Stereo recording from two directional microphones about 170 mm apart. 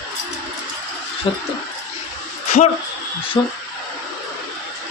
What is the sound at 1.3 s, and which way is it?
Speech, 30° left (ahead or behind).